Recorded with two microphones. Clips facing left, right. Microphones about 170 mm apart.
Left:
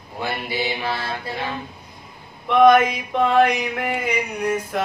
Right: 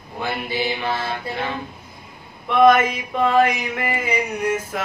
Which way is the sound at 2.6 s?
5° right (ahead or behind).